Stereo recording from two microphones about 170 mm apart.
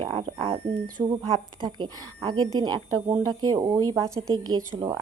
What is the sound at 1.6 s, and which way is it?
Speech, 25° right (ahead or behind).